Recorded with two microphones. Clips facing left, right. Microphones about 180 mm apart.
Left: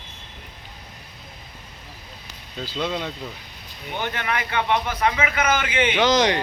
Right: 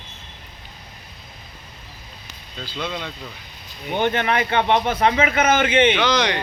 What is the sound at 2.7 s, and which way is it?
Speech, 10° left (ahead or behind).